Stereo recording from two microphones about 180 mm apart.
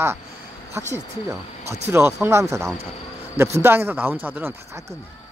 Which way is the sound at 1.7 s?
15° right (ahead or behind).